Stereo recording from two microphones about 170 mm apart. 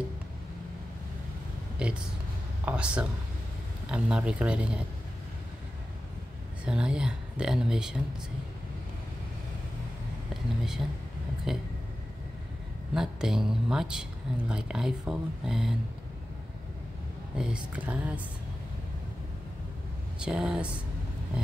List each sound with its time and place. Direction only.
1.8 s speech: 5° right (ahead or behind)
6.6 s speech: 5° right (ahead or behind)
10.3 s speech: centre (ahead or behind)
12.9 s speech: 5° right (ahead or behind)
17.4 s speech: 5° right (ahead or behind)
20.2 s speech: 5° right (ahead or behind)